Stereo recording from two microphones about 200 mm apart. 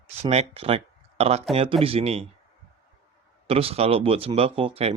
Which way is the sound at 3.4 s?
30° right (ahead or behind).